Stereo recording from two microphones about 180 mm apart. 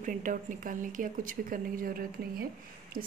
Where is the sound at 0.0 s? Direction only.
45° right (ahead or behind).